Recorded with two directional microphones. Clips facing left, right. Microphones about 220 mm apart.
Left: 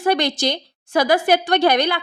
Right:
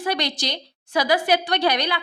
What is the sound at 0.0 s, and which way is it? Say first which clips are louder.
A woman's voice: left 7 dB; 50° left (ahead or behind).